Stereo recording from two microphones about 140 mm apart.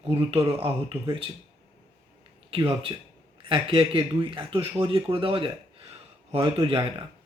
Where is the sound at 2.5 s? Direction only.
40° right (ahead or behind).